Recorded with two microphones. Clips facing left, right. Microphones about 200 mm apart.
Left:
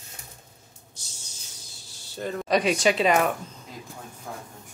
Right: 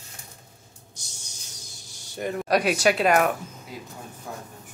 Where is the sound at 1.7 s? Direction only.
15° right (ahead or behind).